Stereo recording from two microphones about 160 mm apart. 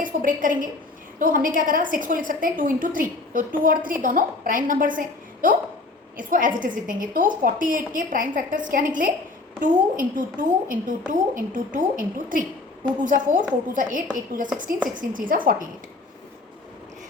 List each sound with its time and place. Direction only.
0.0 s a woman's voice: 55° right (ahead or behind)